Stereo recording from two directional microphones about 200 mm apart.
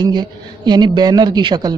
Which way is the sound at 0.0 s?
20° right (ahead or behind).